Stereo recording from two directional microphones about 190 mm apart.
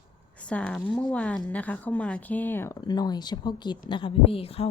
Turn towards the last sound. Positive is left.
turn(degrees=30)  # may be behind; listen again after turning